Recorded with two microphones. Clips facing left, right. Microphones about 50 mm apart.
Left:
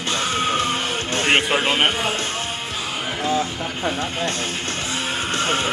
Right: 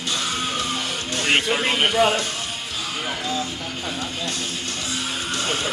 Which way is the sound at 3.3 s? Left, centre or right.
Left.